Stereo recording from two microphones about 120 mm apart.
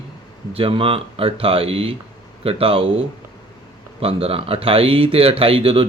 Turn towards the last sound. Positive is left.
turn(degrees=-50)  # may be behind; listen again after turning